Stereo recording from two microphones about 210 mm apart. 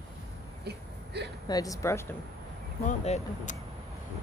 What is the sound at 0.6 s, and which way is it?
Hiccup, 50° right (ahead or behind).